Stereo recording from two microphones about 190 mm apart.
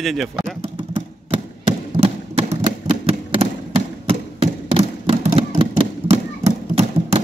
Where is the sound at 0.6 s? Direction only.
30° right (ahead or behind).